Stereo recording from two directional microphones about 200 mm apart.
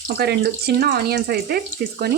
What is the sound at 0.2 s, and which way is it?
Speech, 55° right (ahead or behind).